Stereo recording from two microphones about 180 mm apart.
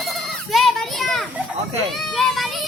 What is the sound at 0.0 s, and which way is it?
Goat, centre (ahead or behind).